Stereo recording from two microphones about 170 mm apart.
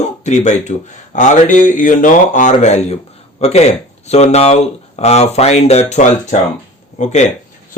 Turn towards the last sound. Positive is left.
turn(degrees=45)  # may be behind; listen again after turning